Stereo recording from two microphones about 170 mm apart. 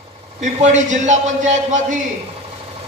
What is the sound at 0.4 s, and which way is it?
A man's voice, 45° right (ahead or behind).